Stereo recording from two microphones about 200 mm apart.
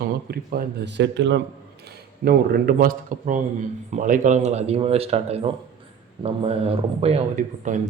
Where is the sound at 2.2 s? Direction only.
50° right (ahead or behind).